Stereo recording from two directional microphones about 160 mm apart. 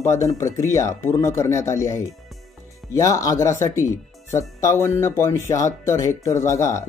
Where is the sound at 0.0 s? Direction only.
20° left (ahead or behind).